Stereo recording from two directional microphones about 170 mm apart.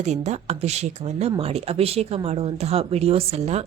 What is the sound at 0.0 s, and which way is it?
A woman's voice, 40° right (ahead or behind).